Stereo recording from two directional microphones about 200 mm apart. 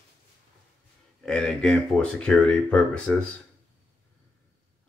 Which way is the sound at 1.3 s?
5° left (ahead or behind).